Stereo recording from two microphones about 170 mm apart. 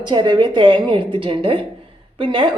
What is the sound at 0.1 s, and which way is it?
A woman's voice, 25° right (ahead or behind).